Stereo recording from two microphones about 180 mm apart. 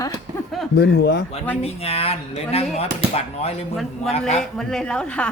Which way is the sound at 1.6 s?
35° left (ahead or behind).